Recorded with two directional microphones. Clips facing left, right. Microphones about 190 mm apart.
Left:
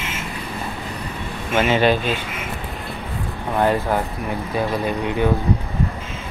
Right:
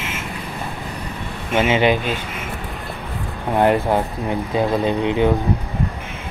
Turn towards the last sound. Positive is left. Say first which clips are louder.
# right 3 dB
turn(degrees=-20)  # may be behind; listen again after turning